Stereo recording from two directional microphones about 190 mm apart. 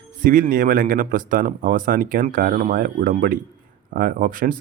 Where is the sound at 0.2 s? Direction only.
45° right (ahead or behind).